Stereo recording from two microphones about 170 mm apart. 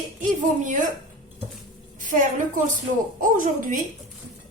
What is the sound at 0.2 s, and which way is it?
Speech, 50° right (ahead or behind).